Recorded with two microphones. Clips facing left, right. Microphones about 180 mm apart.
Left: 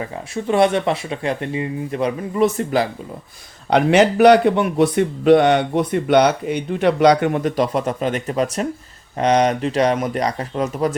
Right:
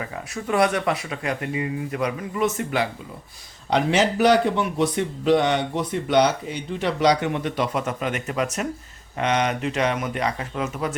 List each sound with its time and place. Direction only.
0.0 s speech: 25° left (ahead or behind)
3.7 s a man's voice: 60° left (ahead or behind); by 10.9 s 35° left (ahead or behind)